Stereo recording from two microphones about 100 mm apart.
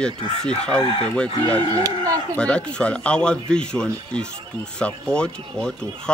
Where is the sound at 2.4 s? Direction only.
10° left (ahead or behind).